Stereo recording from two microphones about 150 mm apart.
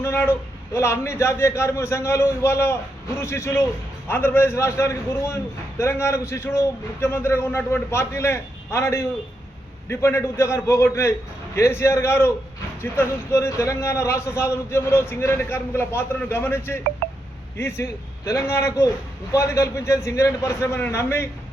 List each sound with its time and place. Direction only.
0.0 s a man's voice: 15° left (ahead or behind)